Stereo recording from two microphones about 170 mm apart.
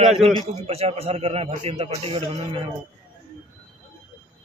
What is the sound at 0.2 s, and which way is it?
A man's voice, 35° right (ahead or behind).